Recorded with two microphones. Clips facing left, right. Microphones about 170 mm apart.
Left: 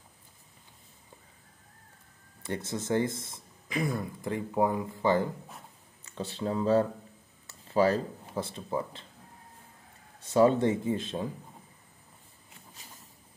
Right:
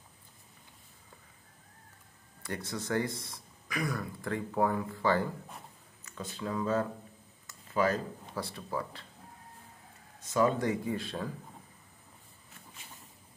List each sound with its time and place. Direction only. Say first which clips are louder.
2.4 s speech: left 4 dB; 25° left (ahead or behind)
6.0 s speech: left 5 dB; 30° left (ahead or behind)
7.4 s a sound: left 4 dB; 30° left (ahead or behind)
8.4 s speech: left 4 dB; 20° left (ahead or behind)
10.2 s speech: left 5 dB; 30° left (ahead or behind)